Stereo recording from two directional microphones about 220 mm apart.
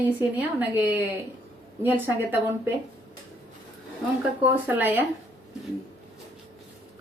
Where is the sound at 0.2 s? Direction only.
10° right (ahead or behind).